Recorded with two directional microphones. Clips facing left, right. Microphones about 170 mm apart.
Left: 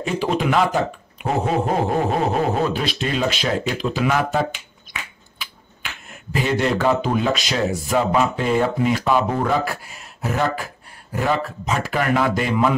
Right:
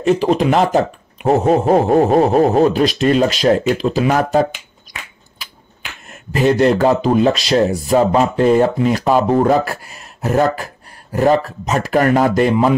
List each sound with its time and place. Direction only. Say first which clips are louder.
0.1 s speech: right 6 dB; 40° right (ahead or behind)
6.3 s speech: right 7 dB; 45° right (ahead or behind)